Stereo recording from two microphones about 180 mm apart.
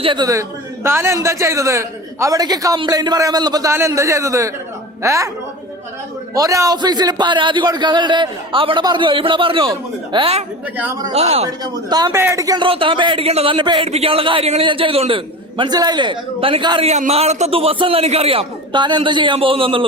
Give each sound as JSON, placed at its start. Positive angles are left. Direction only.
{"t": 0.0, "sound": "a man's voice", "side_deg": -25}
{"t": 6.3, "sound": "speech", "side_deg": -20}
{"t": 11.4, "sound": "speech", "side_deg": -20}